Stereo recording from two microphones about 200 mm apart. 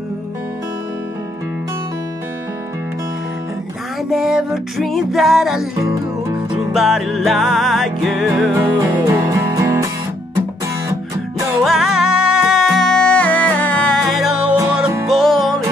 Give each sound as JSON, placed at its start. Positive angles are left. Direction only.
{"t": 4.1, "sound": "music", "side_deg": 0}
{"t": 6.2, "sound": "music", "side_deg": -20}
{"t": 6.7, "sound": "music", "side_deg": 0}
{"t": 8.5, "sound": "music", "side_deg": -15}
{"t": 11.6, "sound": "music", "side_deg": 0}